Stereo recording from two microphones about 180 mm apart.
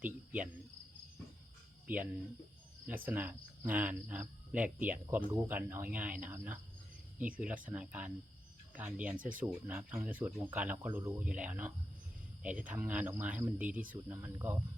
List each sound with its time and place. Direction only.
0.0 s cricket: 10° right (ahead or behind)
3.1 s speech: 10° right (ahead or behind)
9.1 s speech: 50° right (ahead or behind)
9.4 s speech: 10° right (ahead or behind)